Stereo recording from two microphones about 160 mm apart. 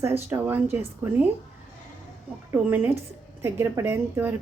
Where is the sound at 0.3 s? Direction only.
10° right (ahead or behind).